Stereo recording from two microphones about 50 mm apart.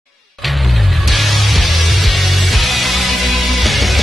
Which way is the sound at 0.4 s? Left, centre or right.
Centre.